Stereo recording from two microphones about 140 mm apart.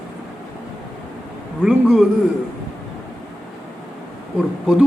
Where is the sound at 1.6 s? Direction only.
5° right (ahead or behind).